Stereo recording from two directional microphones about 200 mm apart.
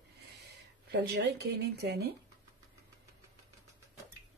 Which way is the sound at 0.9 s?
55° right (ahead or behind).